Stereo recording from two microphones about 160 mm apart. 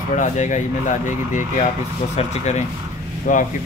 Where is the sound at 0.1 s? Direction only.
50° left (ahead or behind).